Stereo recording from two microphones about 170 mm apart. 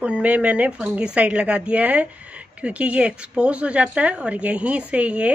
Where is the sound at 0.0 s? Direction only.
10° right (ahead or behind).